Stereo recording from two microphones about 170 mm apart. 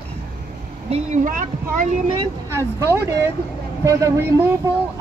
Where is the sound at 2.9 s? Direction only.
15° right (ahead or behind).